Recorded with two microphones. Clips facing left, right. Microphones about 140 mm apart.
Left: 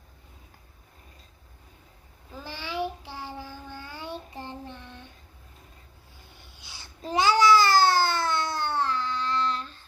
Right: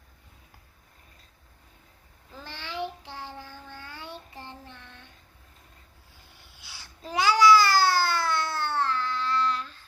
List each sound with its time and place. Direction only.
2.3 s child singing: 10° left (ahead or behind)
6.6 s babbling: 20° left (ahead or behind)